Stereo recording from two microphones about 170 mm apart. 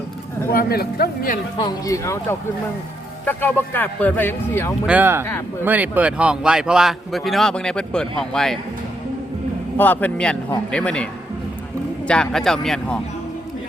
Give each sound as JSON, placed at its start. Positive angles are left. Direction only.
{"t": 0.5, "sound": "a man's voice", "side_deg": 65}
{"t": 1.5, "sound": "speech", "side_deg": 25}
{"t": 3.2, "sound": "speech", "side_deg": 10}
{"t": 4.9, "sound": "speech", "side_deg": -10}
{"t": 9.7, "sound": "speech", "side_deg": 10}